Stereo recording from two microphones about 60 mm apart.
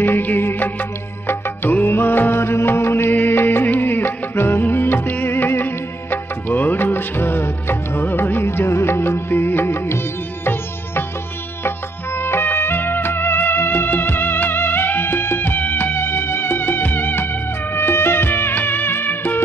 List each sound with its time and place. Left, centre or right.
0.0 s music: left
12.2 s music: left